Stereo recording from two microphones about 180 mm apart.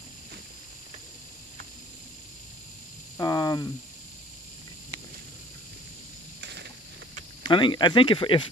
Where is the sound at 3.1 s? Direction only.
20° left (ahead or behind).